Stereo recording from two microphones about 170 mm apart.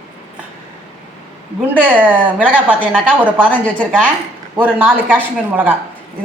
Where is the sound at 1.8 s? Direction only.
10° right (ahead or behind).